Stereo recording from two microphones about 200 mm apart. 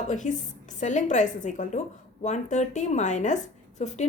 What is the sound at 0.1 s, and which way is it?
A woman's voice, 40° left (ahead or behind).